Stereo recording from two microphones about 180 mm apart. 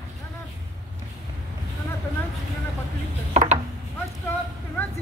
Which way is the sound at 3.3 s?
40° right (ahead or behind).